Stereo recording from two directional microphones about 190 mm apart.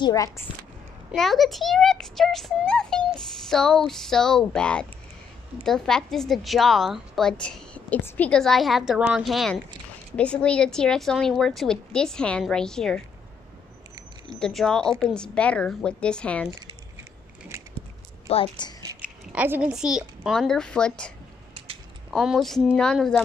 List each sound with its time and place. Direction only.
0.0 s a woman's voice: 20° left (ahead or behind)
1.1 s a woman's voice: centre (ahead or behind)
14.4 s a woman's voice: centre (ahead or behind)
18.3 s a woman's voice: 25° left (ahead or behind)
19.0 s a woman's voice: 10° right (ahead or behind)
22.1 s a woman's voice: centre (ahead or behind)